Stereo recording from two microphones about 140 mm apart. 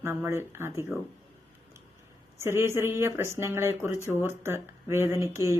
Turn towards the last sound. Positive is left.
turn(degrees=-20)  # may be behind; listen again after turning